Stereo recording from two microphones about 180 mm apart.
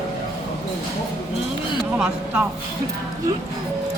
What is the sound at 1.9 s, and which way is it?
Speech, 5° right (ahead or behind).